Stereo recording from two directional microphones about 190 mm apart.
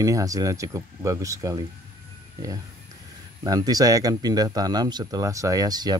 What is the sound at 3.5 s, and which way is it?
Speech, 20° right (ahead or behind).